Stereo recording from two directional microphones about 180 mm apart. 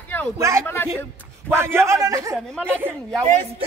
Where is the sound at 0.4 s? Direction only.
15° right (ahead or behind).